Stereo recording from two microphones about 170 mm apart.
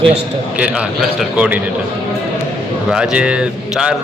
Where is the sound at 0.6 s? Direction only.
5° right (ahead or behind).